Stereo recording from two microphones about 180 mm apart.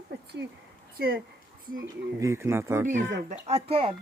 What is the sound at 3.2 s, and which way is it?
Speech, 35° right (ahead or behind).